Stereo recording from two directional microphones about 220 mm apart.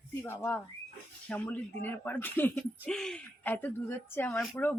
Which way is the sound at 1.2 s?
5° left (ahead or behind).